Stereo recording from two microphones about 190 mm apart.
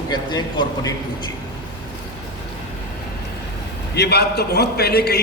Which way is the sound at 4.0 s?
60° left (ahead or behind).